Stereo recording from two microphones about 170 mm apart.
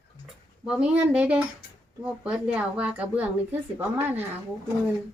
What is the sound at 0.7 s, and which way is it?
A woman's voice, 5° right (ahead or behind).